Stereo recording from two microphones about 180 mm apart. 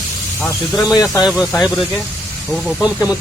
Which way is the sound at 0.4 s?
Centre (ahead or behind).